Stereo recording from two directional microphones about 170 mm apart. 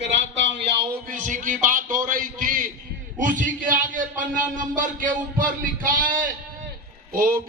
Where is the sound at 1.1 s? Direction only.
50° right (ahead or behind).